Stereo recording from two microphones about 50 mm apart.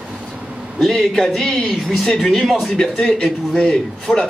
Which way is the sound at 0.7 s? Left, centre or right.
Centre.